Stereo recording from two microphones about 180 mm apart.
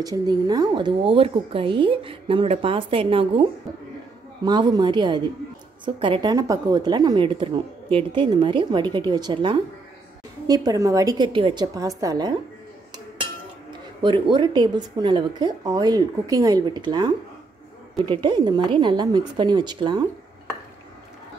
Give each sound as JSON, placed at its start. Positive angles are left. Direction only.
{"t": 0.0, "sound": "a woman's voice", "side_deg": -20}
{"t": 14.0, "sound": "a woman's voice", "side_deg": -25}